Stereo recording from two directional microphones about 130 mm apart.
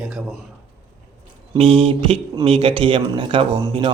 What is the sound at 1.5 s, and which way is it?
A man's voice, 45° right (ahead or behind).